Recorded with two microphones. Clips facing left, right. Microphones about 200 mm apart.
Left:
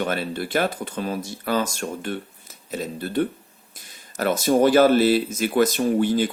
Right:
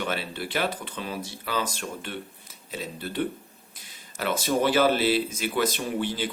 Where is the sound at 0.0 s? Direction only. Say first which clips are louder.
Left 5 dB; 45° left (ahead or behind).